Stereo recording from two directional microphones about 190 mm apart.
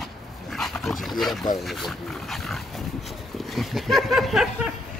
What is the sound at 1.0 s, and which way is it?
Speech, centre (ahead or behind).